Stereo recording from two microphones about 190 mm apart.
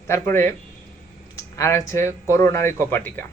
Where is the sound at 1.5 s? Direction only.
15° left (ahead or behind).